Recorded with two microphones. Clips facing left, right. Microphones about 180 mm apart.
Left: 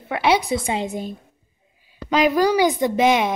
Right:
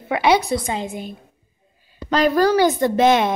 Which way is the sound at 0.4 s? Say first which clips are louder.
Even; 20° left (ahead or behind).